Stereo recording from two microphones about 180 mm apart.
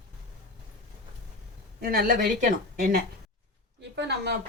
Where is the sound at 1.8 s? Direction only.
55° right (ahead or behind).